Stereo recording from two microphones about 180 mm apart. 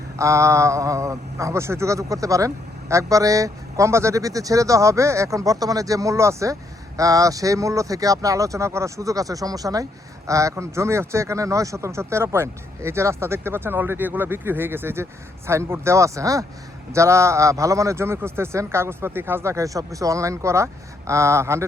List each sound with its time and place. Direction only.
0.2 s speech: 15° right (ahead or behind)